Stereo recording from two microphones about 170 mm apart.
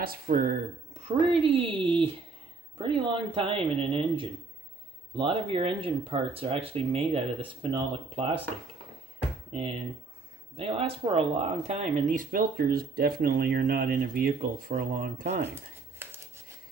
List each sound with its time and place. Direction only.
0.0 s speech: 60° right (ahead or behind)
0.9 s speech: 35° right (ahead or behind)
9.5 s speech: 35° right (ahead or behind)